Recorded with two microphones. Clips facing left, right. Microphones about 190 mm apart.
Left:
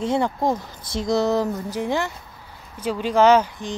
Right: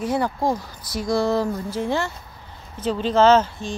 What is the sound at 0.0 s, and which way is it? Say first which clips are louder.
Speech: left 1 dB; 25° left (ahead or behind).